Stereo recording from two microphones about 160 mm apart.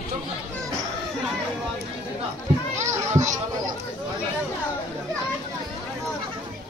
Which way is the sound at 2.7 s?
15° right (ahead or behind).